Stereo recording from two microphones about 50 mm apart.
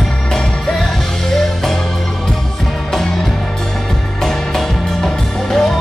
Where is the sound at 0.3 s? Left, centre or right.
Centre.